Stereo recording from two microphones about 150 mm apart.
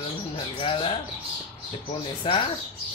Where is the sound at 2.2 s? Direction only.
35° left (ahead or behind).